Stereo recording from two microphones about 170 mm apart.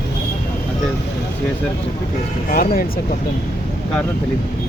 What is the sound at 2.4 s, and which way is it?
Speech, 55° left (ahead or behind).